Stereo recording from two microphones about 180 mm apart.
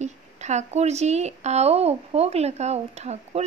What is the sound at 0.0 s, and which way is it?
Speech, 40° right (ahead or behind).